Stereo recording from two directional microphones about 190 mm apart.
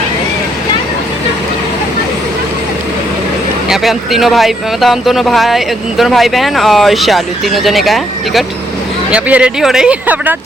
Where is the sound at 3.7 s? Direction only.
Centre (ahead or behind).